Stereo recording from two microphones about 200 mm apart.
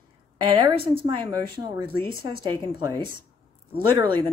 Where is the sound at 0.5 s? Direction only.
25° right (ahead or behind).